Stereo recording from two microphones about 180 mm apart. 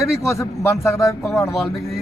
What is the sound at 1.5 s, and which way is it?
Speech, centre (ahead or behind).